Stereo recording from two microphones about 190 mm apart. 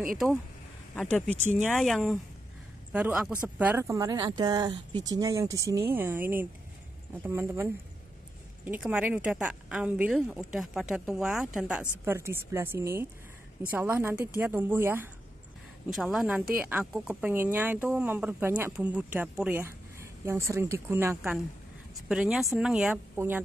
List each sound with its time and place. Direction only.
1.3 s speech: 40° right (ahead or behind)
1.6 s speech: centre (ahead or behind)